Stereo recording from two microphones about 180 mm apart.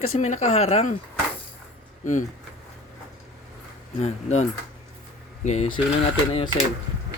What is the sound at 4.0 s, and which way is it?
Speech, 40° left (ahead or behind).